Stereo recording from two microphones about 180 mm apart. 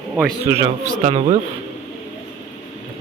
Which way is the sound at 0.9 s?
35° right (ahead or behind).